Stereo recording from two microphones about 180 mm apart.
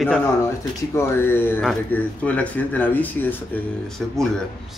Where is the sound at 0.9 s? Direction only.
10° left (ahead or behind).